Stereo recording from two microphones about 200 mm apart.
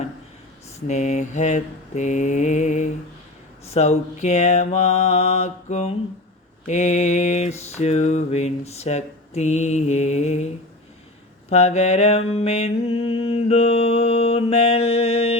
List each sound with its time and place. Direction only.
0.9 s mantra: 35° left (ahead or behind)